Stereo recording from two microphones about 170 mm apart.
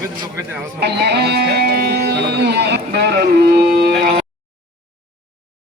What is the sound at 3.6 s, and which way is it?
Music, 70° right (ahead or behind).